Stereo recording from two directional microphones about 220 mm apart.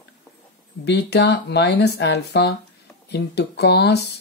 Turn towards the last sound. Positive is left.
turn(degrees=50)  # may be behind; listen again after turning